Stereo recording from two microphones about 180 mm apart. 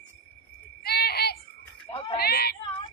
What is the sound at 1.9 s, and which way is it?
Speech, 25° left (ahead or behind).